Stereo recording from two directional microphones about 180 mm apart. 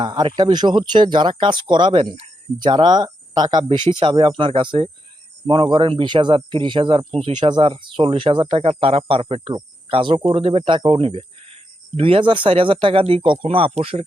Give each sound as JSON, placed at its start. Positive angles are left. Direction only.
{"t": 0.0, "sound": "speech", "side_deg": -25}